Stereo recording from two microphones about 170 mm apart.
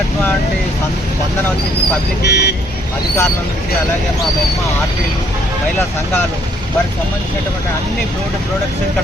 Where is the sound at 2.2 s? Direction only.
70° left (ahead or behind).